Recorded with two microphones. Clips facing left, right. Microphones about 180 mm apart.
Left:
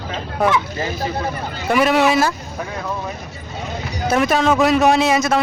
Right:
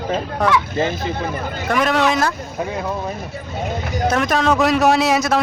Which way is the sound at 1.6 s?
5° left (ahead or behind).